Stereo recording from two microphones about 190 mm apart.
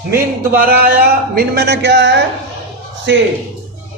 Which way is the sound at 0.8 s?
55° right (ahead or behind).